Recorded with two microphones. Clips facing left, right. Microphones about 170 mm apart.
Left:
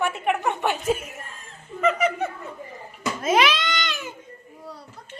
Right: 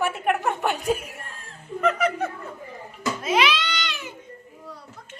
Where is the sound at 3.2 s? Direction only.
45° left (ahead or behind).